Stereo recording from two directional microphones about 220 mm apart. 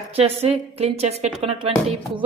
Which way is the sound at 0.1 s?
30° right (ahead or behind).